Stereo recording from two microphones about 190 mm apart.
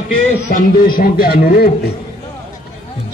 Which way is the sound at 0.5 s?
50° left (ahead or behind).